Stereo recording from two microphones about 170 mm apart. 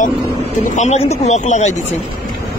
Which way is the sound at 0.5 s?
45° left (ahead or behind).